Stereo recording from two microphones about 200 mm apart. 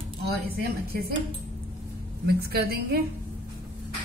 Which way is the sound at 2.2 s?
50° right (ahead or behind).